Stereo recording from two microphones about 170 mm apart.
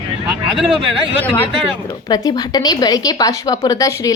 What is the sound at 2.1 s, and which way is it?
A woman's voice, 20° left (ahead or behind).